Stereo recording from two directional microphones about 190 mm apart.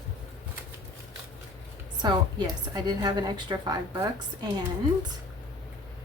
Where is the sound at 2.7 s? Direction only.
20° right (ahead or behind).